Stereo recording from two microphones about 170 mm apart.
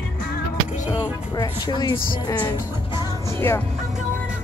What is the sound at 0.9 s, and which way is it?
Speech, 25° left (ahead or behind).